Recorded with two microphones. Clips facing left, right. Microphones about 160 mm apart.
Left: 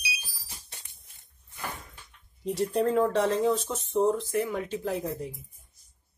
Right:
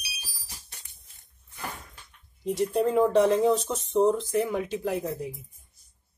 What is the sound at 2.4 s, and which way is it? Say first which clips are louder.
Speech: right 1 dB; centre (ahead or behind).